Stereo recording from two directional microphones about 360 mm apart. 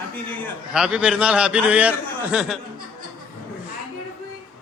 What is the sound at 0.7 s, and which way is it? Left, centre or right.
A man's voice, centre.